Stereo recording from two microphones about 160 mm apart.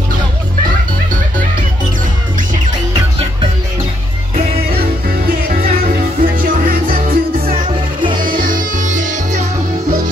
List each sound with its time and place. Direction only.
2.9 s music: 30° right (ahead or behind)
5.5 s music: 65° right (ahead or behind)